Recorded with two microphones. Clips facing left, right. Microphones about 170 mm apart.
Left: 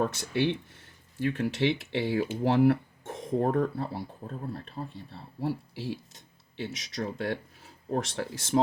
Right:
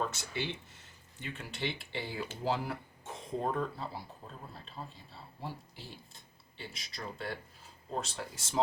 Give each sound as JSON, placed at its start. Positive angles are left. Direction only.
{"t": 0.0, "sound": "speech", "side_deg": 55}
{"t": 1.2, "sound": "speech", "side_deg": 75}
{"t": 5.1, "sound": "speech", "side_deg": 80}